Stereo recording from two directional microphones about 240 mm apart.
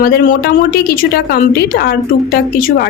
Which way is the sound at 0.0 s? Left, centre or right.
Left.